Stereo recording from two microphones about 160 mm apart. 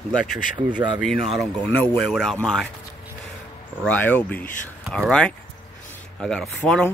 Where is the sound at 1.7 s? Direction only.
10° left (ahead or behind).